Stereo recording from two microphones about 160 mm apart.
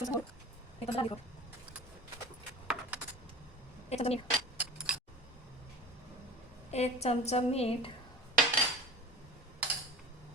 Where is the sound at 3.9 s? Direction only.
40° left (ahead or behind).